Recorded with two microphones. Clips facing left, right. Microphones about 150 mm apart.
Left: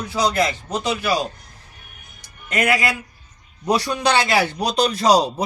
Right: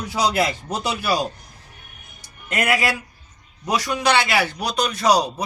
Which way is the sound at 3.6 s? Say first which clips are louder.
Left 1 dB; 30° left (ahead or behind).